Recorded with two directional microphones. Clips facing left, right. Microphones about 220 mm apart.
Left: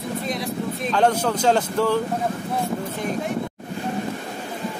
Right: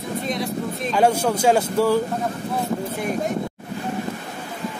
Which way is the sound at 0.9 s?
10° right (ahead or behind).